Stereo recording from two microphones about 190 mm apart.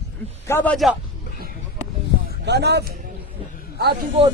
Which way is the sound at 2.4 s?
60° right (ahead or behind).